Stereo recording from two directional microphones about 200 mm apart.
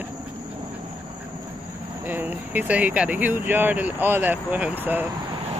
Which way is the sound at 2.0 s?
10° right (ahead or behind).